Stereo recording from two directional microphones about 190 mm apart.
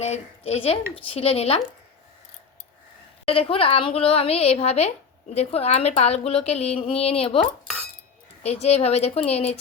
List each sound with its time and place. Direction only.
0.0 s a woman's voice: 35° left (ahead or behind)
3.2 s a woman's voice: 30° left (ahead or behind)
8.4 s a woman's voice: 35° left (ahead or behind)